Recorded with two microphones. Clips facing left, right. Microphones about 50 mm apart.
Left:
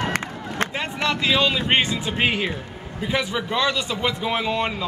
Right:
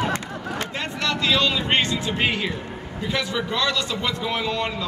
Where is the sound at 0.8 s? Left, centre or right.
Centre.